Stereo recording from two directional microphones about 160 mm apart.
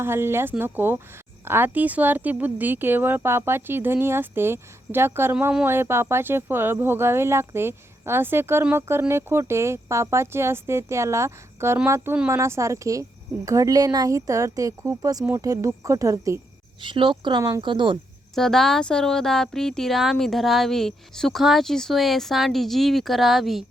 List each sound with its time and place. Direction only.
0.0 s speech: 15° right (ahead or behind)
16.8 s speech: 30° right (ahead or behind)
18.3 s speech: centre (ahead or behind)